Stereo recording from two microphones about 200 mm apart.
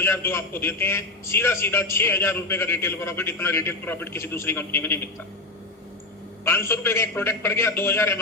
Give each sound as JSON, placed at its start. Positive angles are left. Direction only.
{"t": 0.0, "sound": "a man's voice", "side_deg": 10}
{"t": 6.4, "sound": "a man's voice", "side_deg": 10}